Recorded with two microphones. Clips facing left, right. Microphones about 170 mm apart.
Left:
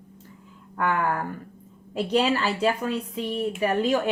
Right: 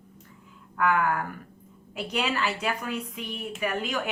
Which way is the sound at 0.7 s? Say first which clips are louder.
Even; 30° left (ahead or behind).